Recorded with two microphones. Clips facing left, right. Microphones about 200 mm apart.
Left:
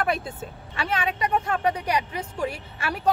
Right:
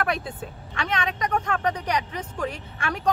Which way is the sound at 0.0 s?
Centre (ahead or behind).